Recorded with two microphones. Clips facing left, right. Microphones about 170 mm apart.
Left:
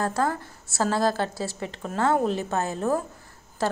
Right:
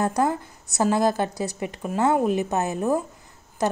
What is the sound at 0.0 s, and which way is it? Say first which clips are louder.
A woman's voice: right 3 dB; 20° right (ahead or behind).